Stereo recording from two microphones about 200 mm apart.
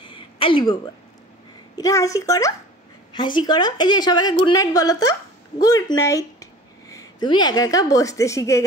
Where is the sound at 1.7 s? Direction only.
15° left (ahead or behind).